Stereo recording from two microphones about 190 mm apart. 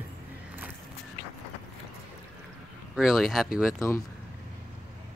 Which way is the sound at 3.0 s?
Centre (ahead or behind).